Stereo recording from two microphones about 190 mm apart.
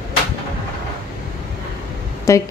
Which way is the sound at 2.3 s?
15° left (ahead or behind).